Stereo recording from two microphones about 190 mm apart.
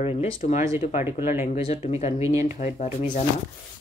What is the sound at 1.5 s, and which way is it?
Speech, 30° left (ahead or behind).